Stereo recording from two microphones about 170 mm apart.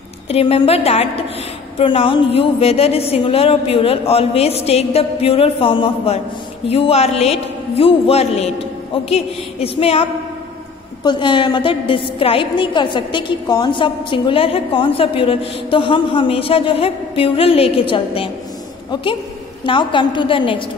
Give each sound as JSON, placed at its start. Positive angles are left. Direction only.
{"t": 0.3, "sound": "a woman's voice", "side_deg": 35}
{"t": 11.1, "sound": "a woman's voice", "side_deg": 30}
{"t": 19.6, "sound": "a woman's voice", "side_deg": 30}